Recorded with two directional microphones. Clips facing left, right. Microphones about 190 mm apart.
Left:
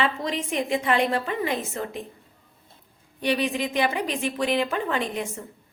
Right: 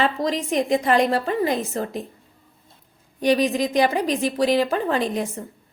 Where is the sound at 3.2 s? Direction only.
40° right (ahead or behind).